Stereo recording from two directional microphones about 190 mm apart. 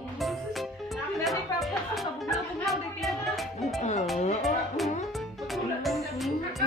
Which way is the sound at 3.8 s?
40° left (ahead or behind).